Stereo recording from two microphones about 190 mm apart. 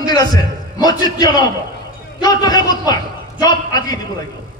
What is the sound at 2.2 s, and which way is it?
A man's voice, 20° left (ahead or behind).